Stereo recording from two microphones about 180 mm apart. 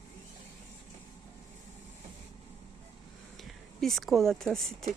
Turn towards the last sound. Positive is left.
turn(degrees=0)  # may be behind; listen again after turning